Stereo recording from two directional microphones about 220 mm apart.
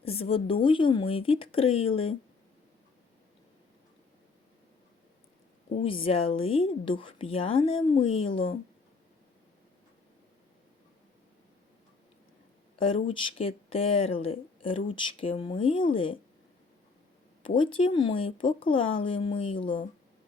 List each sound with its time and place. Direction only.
0.0 s speech: 25° left (ahead or behind)
5.7 s speech: 25° left (ahead or behind)
12.8 s speech: 25° left (ahead or behind)
17.4 s speech: 25° left (ahead or behind)